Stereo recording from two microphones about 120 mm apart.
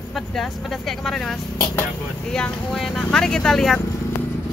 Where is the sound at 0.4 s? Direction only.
Centre (ahead or behind).